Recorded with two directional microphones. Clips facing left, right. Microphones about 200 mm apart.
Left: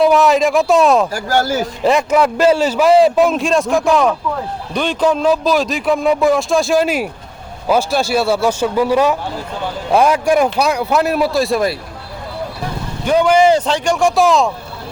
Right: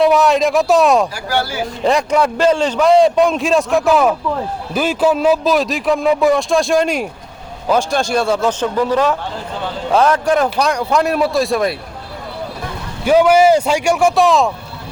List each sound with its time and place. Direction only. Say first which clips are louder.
0.0 s a man's voice: left 1 dB; centre (ahead or behind)
1.1 s speech: left 4 dB; 45° left (ahead or behind)
1.8 s a man's voice: left 1 dB; 5° left (ahead or behind)
13.1 s speech: right 1 dB; 5° right (ahead or behind)